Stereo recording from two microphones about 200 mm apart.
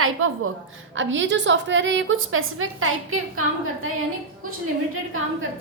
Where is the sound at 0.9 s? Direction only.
70° right (ahead or behind); by 3.2 s 90° right.